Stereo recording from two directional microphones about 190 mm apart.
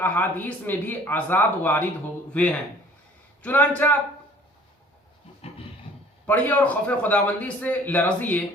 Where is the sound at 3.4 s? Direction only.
10° left (ahead or behind).